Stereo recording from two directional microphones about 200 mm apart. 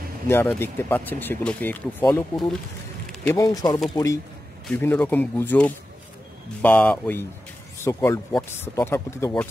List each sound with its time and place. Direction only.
0.3 s speech: 10° left (ahead or behind)
3.3 s speech: 20° left (ahead or behind)